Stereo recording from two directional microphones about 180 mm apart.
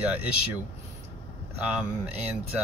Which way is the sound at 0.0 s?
10° right (ahead or behind).